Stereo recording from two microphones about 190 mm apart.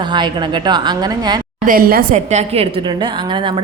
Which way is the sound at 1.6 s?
50° right (ahead or behind).